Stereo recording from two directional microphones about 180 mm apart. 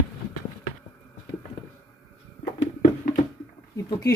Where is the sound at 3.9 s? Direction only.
20° left (ahead or behind).